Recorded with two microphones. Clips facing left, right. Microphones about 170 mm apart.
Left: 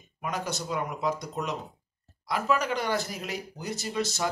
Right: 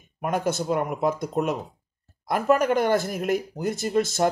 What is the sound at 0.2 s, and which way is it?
Speech, 50° right (ahead or behind).